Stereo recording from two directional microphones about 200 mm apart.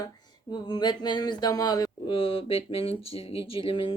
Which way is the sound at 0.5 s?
20° left (ahead or behind).